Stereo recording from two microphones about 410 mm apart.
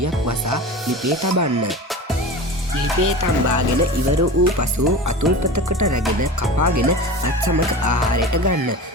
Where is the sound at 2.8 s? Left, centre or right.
Right.